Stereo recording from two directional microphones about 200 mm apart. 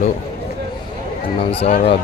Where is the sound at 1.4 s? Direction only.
30° left (ahead or behind).